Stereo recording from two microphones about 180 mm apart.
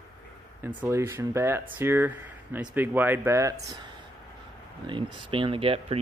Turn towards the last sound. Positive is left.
turn(degrees=-30)  # may be behind; listen again after turning